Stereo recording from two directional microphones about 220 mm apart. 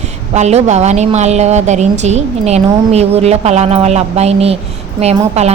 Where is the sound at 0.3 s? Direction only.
30° right (ahead or behind).